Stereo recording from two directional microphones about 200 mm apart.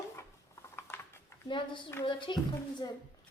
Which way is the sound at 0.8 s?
10° left (ahead or behind).